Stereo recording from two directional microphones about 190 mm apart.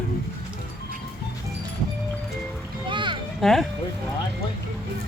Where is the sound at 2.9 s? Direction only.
25° right (ahead or behind).